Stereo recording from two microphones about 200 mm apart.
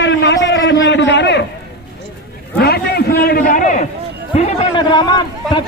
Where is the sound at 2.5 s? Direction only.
50° left (ahead or behind).